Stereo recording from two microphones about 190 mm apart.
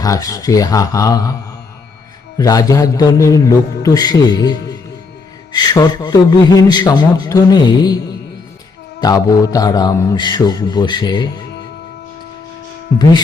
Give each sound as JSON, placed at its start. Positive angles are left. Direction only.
{"t": 0.0, "sound": "speech", "side_deg": 20}
{"t": 2.4, "sound": "a man's voice", "side_deg": 20}
{"t": 9.0, "sound": "a man's voice", "side_deg": 20}